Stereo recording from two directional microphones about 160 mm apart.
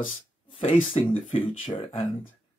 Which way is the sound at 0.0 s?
35° left (ahead or behind).